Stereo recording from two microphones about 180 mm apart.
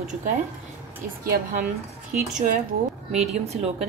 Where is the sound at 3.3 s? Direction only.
35° right (ahead or behind).